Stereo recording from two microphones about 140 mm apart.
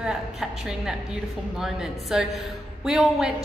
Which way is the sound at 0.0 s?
5° right (ahead or behind).